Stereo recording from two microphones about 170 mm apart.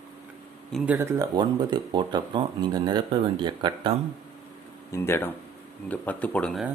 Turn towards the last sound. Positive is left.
turn(degrees=5)  # may be behind; listen again after turning